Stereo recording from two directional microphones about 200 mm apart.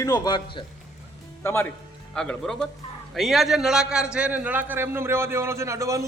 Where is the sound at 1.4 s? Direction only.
10° left (ahead or behind).